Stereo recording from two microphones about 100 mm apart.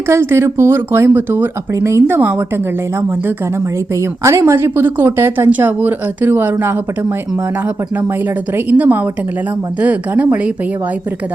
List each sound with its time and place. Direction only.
0.1 s a woman's voice: 25° right (ahead or behind)
4.2 s a woman's voice: 30° right (ahead or behind)
8.5 s a woman's voice: 20° right (ahead or behind)